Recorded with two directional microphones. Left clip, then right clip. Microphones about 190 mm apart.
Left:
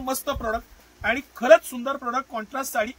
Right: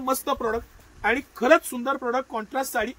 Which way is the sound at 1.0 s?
40° left (ahead or behind).